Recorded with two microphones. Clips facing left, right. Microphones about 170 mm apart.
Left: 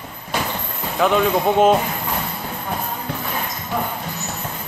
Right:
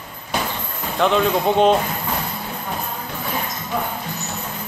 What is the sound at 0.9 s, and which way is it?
Speech, 5° left (ahead or behind).